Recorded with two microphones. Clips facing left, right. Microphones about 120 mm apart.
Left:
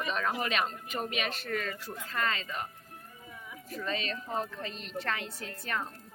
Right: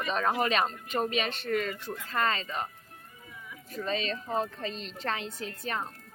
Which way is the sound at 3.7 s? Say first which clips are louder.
Right 3 dB; 30° right (ahead or behind).